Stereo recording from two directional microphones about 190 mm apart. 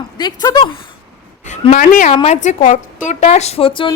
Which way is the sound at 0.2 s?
20° left (ahead or behind).